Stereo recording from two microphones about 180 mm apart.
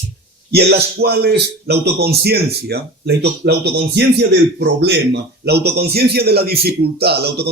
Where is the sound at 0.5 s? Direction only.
60° right (ahead or behind).